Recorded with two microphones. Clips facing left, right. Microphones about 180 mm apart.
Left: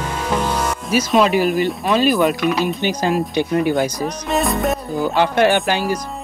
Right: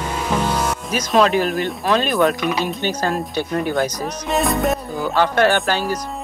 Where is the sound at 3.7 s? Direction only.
Centre (ahead or behind).